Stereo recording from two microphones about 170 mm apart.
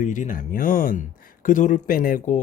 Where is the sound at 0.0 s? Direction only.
50° left (ahead or behind).